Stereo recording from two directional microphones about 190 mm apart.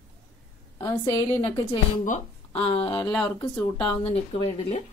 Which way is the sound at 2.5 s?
30° left (ahead or behind).